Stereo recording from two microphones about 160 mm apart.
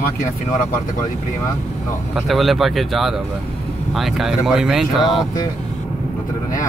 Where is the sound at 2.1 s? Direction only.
Centre (ahead or behind).